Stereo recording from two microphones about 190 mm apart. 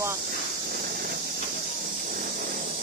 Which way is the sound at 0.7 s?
55° right (ahead or behind).